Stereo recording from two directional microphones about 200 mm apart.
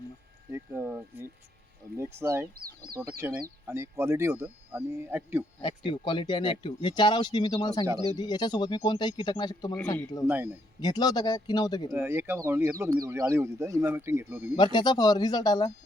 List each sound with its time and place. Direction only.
0.5 s a sound: 10° right (ahead or behind)
2.0 s speech: 15° right (ahead or behind)
5.6 s speech: 25° left (ahead or behind)
10.2 s speech: 10° right (ahead or behind)
10.8 s speech: 20° left (ahead or behind)
11.9 s speech: 10° right (ahead or behind)
14.5 s speech: 20° left (ahead or behind)